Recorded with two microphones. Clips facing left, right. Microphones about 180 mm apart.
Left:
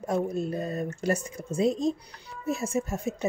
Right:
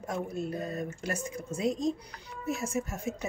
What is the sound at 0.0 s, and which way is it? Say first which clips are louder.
Speech: left 6 dB; 35° left (ahead or behind).